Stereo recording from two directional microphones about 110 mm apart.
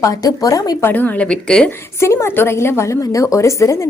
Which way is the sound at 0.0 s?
35° left (ahead or behind).